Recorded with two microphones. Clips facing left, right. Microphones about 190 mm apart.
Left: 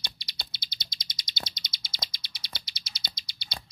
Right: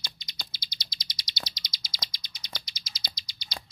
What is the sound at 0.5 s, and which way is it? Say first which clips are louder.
Bird: even; 50° left (ahead or behind).